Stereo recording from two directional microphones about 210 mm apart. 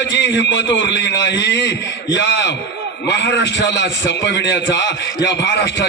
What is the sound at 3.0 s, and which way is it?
A man's voice, 55° left (ahead or behind).